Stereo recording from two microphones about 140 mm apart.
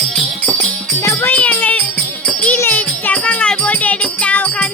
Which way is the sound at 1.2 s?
10° left (ahead or behind).